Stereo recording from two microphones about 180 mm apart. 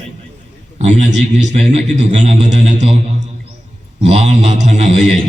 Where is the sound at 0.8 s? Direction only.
40° right (ahead or behind).